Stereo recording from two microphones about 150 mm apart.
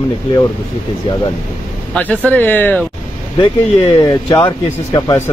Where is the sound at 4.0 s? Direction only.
25° left (ahead or behind).